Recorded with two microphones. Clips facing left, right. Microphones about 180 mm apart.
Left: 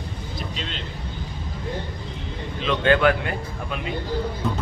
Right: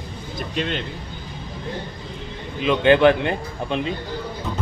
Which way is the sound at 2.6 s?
20° right (ahead or behind).